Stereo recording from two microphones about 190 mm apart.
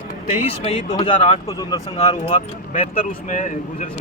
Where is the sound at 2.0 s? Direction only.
30° left (ahead or behind).